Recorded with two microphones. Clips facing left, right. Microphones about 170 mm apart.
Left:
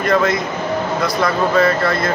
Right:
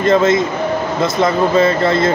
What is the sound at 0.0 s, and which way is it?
Speech, 20° right (ahead or behind).